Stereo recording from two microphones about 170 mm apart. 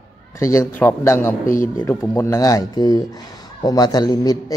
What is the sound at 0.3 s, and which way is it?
Speech, 15° left (ahead or behind).